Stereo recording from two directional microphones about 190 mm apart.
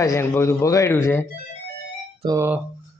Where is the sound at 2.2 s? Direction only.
15° right (ahead or behind).